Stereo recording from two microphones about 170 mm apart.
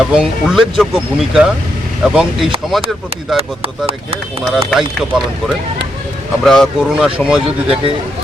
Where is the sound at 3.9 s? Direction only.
35° right (ahead or behind).